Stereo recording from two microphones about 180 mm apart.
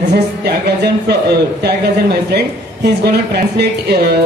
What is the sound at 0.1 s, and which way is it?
A woman's voice, 65° right (ahead or behind).